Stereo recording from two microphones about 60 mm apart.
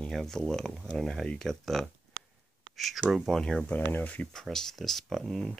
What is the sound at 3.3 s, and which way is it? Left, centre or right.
Speech, centre.